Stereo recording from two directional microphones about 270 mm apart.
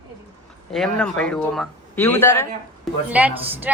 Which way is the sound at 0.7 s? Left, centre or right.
Centre.